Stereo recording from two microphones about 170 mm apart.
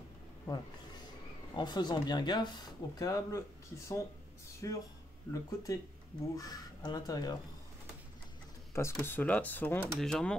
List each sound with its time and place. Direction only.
1.5 s speech: 25° left (ahead or behind)
8.7 s speech: 15° left (ahead or behind)